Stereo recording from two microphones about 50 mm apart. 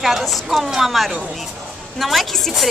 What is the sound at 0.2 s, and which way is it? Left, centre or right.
Speech, centre.